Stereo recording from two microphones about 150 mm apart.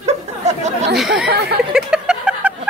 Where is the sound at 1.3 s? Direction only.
90° right.